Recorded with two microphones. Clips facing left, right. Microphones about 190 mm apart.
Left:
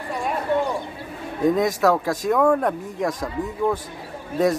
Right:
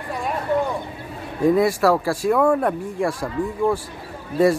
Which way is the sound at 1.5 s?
5° right (ahead or behind).